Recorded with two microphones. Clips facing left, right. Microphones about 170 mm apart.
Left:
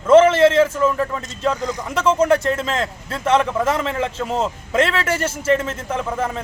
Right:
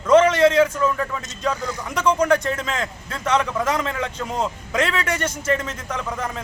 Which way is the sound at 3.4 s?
30° left (ahead or behind).